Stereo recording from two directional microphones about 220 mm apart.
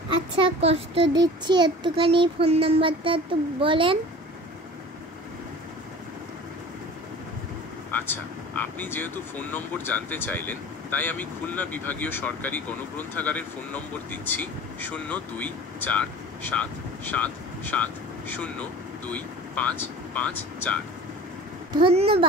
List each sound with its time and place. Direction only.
0.4 s a child's voice: 25° right (ahead or behind)
7.9 s speech: 10° left (ahead or behind)
21.8 s a child's voice: 25° right (ahead or behind)